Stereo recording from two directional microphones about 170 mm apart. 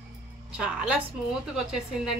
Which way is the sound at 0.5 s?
5° right (ahead or behind).